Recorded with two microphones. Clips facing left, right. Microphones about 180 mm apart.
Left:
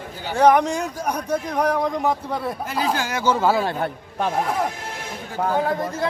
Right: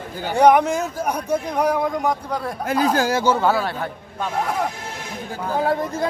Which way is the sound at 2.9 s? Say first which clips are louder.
Right 6 dB; 35° right (ahead or behind).